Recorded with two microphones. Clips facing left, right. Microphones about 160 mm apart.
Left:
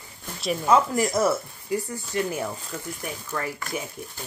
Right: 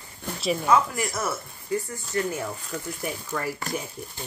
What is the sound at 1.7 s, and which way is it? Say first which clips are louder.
Chopping: even; 15° left (ahead or behind).